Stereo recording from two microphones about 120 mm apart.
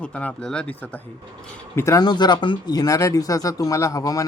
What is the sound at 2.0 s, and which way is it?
Speech, 35° left (ahead or behind).